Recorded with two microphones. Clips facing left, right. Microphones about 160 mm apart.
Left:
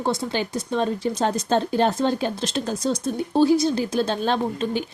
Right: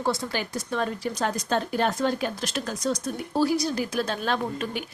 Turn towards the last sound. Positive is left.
turn(degrees=25)  # may be behind; listen again after turning